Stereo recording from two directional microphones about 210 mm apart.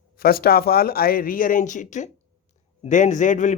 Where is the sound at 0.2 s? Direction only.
45° left (ahead or behind).